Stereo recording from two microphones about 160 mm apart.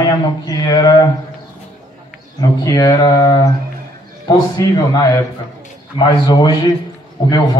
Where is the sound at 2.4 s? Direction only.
25° left (ahead or behind).